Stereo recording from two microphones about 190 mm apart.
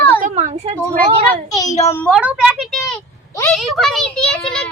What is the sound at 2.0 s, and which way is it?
A child's voice, 5° right (ahead or behind).